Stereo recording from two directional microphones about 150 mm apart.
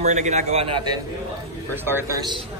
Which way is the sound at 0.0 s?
50° right (ahead or behind).